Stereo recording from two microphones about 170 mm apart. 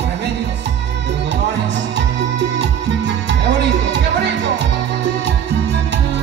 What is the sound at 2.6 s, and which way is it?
Music, 90° right.